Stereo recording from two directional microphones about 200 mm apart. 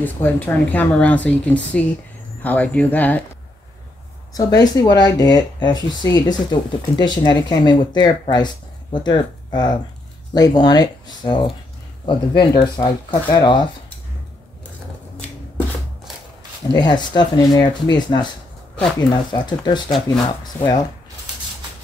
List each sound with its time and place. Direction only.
0.0 s a woman's voice: 10° left (ahead or behind)
4.3 s speech: 20° left (ahead or behind)
16.7 s a woman's voice: 20° left (ahead or behind)